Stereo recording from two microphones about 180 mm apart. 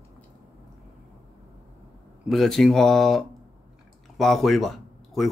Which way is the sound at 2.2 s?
Centre (ahead or behind).